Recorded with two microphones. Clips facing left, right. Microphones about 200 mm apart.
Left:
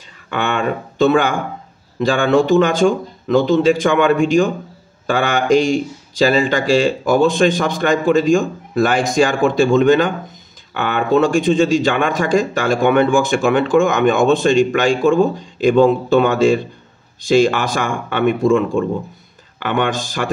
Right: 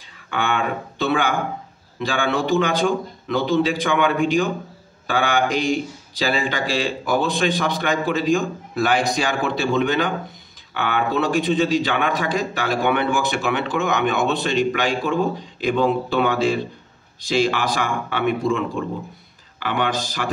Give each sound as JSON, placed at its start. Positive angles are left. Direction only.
{"t": 0.5, "sound": "a man's voice", "side_deg": 45}